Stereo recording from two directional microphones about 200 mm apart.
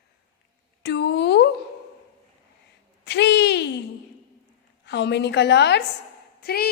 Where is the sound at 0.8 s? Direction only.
60° left (ahead or behind).